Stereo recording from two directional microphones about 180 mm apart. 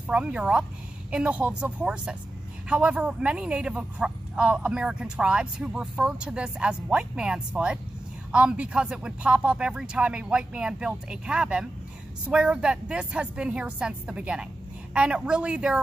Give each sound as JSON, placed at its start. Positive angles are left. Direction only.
{"t": 0.0, "sound": "speech", "side_deg": -5}